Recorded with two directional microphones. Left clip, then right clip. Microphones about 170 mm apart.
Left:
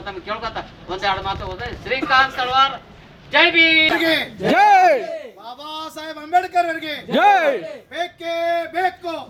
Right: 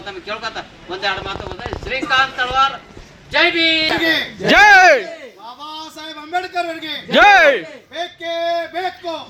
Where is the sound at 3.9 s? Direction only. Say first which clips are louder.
Right 1 dB; centre (ahead or behind).